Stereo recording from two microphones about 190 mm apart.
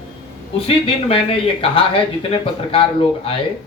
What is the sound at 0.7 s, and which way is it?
Speech, 30° left (ahead or behind).